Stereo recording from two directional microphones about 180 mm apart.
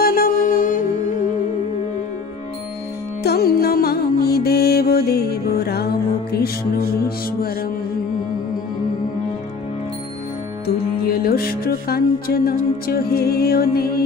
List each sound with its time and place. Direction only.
0.0 s music: 55° left (ahead or behind)
3.3 s music: 60° left (ahead or behind)
11.1 s music: 60° left (ahead or behind)